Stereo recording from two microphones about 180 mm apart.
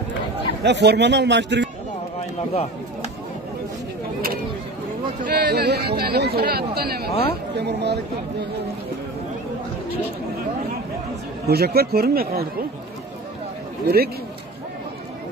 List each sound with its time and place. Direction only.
0.7 s a man's voice: 70° right (ahead or behind)
2.5 s speech: 35° left (ahead or behind)
5.2 s a man's voice: 55° right (ahead or behind)
11.4 s speech: 60° right (ahead or behind)
13.8 s speech: 60° right (ahead or behind)